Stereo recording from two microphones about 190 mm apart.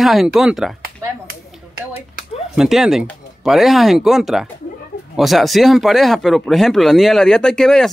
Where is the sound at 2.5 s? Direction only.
5° right (ahead or behind).